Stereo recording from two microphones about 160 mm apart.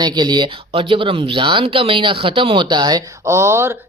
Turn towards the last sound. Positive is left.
turn(degrees=-15)  # may be behind; listen again after turning